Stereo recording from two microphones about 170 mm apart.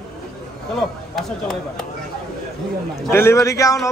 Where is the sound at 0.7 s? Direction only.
Centre (ahead or behind).